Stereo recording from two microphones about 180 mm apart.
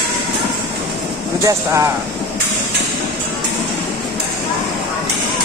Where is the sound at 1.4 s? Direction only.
15° right (ahead or behind).